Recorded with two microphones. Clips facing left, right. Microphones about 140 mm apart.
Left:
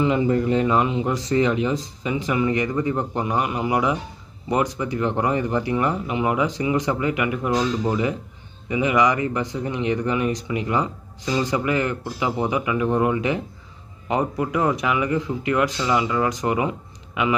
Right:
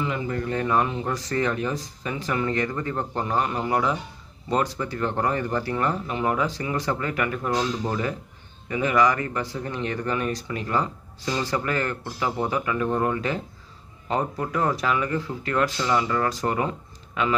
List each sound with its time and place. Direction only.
0.0 s speech: 20° left (ahead or behind)